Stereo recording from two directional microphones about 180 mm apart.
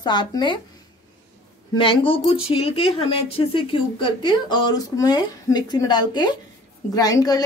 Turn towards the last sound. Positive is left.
turn(degrees=20)  # may be behind; listen again after turning